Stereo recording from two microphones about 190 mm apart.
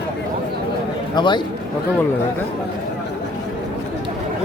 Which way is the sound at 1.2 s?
25° left (ahead or behind).